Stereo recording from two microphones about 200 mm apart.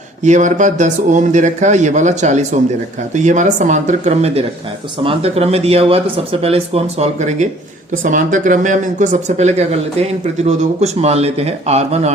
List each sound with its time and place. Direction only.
0.2 s speech: 35° right (ahead or behind)